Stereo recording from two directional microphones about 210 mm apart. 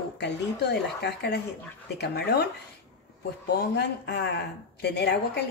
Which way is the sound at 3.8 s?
50° left (ahead or behind).